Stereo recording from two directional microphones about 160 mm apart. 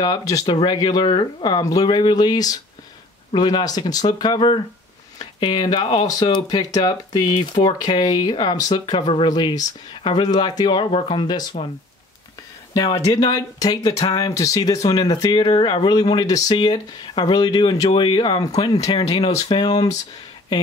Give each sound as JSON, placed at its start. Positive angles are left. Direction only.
{"t": 0.0, "sound": "speech", "side_deg": 25}
{"t": 12.7, "sound": "speech", "side_deg": 25}